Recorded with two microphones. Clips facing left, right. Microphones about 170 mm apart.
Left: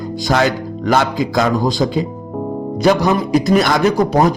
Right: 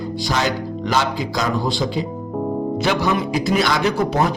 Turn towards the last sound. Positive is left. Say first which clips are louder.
# left 5 dB
turn(degrees=40)  # may be behind; listen again after turning